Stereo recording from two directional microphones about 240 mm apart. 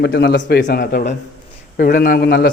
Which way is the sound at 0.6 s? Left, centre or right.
Left.